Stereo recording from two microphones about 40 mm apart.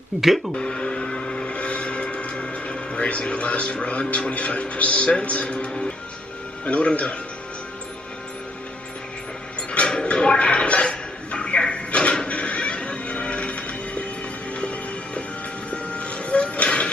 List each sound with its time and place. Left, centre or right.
0.6 s vehicle: left
6.6 s speech: left
9.6 s a sound: left
12.3 s music: left